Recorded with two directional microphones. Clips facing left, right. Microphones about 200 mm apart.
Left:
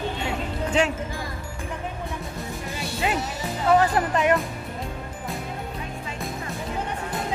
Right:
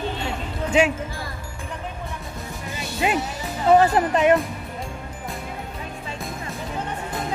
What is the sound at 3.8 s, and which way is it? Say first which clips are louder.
Speech: right 4 dB; 25° right (ahead or behind).